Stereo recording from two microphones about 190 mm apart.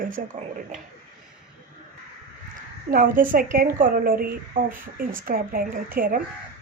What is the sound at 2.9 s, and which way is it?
Speech, 45° right (ahead or behind).